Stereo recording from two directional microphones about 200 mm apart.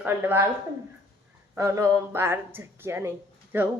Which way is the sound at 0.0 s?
10° right (ahead or behind).